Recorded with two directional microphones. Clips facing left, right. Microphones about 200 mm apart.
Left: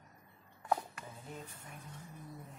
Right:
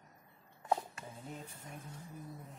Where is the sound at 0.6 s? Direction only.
25° right (ahead or behind).